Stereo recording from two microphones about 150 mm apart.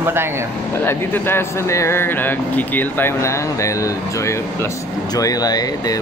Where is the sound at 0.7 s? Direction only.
15° left (ahead or behind).